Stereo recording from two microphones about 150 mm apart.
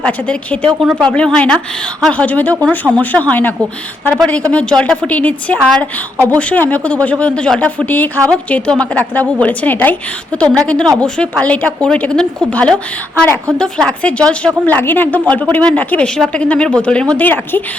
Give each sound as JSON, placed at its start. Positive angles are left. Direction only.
{"t": 0.0, "sound": "a woman's voice", "side_deg": 5}